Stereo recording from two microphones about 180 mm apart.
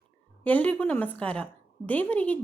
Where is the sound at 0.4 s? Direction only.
10° left (ahead or behind).